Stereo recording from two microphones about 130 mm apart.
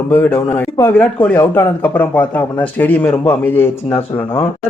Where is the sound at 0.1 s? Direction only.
15° left (ahead or behind).